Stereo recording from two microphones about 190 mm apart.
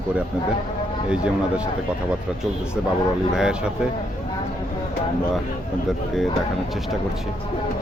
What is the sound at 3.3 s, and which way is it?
Speech, 5° right (ahead or behind).